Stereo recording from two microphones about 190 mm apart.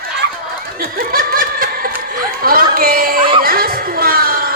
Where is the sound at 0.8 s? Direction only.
50° right (ahead or behind).